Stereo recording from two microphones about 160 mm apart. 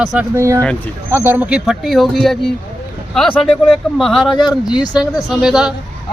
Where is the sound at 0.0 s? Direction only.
Centre (ahead or behind).